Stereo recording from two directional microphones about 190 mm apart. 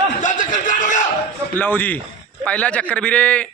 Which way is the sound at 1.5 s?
10° left (ahead or behind).